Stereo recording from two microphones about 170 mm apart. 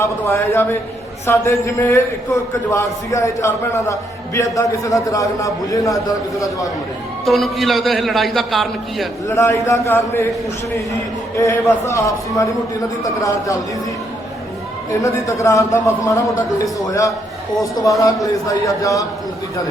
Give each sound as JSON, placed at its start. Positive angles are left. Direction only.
{"t": 0.0, "sound": "a man's voice", "side_deg": 15}
{"t": 7.3, "sound": "a man's voice", "side_deg": 0}
{"t": 9.3, "sound": "a man's voice", "side_deg": 15}
{"t": 11.3, "sound": "a man's voice", "side_deg": 15}
{"t": 15.0, "sound": "a man's voice", "side_deg": 15}
{"t": 16.8, "sound": "a man's voice", "side_deg": 20}